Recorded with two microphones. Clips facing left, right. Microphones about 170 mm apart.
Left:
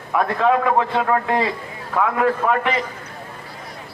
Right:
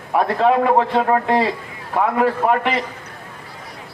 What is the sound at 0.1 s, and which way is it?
A man's voice, 30° right (ahead or behind).